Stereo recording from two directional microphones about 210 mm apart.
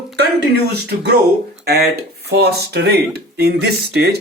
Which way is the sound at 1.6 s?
50° right (ahead or behind).